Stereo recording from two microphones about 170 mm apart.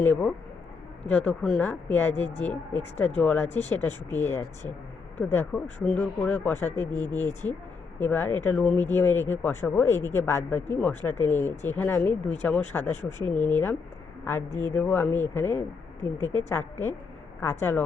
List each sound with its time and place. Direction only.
0.0 s speech: 10° left (ahead or behind)